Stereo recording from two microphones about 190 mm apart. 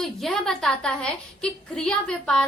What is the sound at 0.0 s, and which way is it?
A woman's voice, centre (ahead or behind).